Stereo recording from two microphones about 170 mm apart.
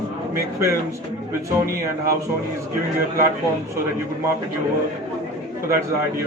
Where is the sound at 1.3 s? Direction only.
15° right (ahead or behind).